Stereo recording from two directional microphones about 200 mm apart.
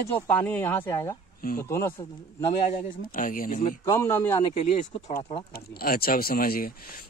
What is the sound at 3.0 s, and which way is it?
Speech, 45° left (ahead or behind).